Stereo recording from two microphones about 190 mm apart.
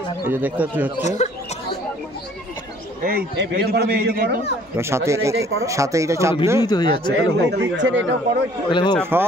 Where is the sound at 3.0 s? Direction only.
60° right (ahead or behind).